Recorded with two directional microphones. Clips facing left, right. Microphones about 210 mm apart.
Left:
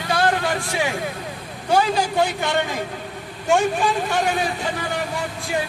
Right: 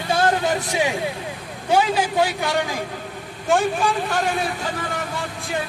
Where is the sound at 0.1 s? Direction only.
20° right (ahead or behind).